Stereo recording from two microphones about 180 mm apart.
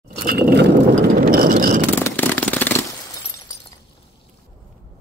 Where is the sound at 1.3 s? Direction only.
55° right (ahead or behind).